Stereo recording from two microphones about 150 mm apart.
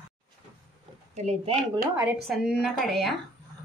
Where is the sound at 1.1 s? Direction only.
50° right (ahead or behind).